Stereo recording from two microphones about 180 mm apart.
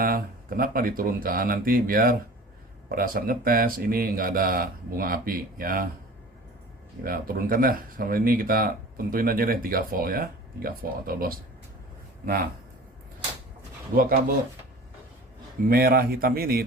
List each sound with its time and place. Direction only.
0.0 s speech: 55° right (ahead or behind)
7.0 s speech: 55° right (ahead or behind)
13.9 s speech: 55° right (ahead or behind)
15.7 s a man's voice: 55° right (ahead or behind)